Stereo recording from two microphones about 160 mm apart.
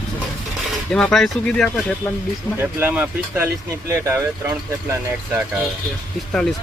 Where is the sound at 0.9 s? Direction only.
5° left (ahead or behind).